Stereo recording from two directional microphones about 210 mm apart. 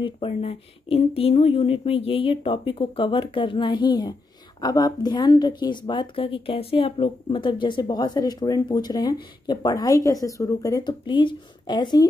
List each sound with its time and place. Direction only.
0.0 s speech: 25° left (ahead or behind)